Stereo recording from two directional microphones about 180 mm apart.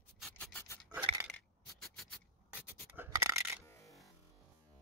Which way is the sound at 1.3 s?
5° left (ahead or behind).